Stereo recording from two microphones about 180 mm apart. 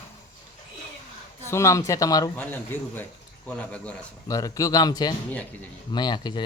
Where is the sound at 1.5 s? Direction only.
15° left (ahead or behind).